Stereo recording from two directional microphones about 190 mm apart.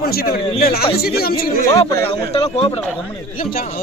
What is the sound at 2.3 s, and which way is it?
Speech, 30° left (ahead or behind).